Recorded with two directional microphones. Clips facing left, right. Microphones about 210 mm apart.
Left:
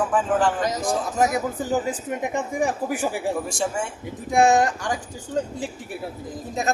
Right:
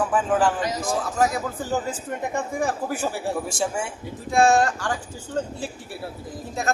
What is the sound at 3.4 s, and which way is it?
Speech, centre (ahead or behind).